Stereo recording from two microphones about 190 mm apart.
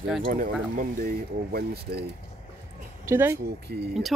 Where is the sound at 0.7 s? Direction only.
45° right (ahead or behind).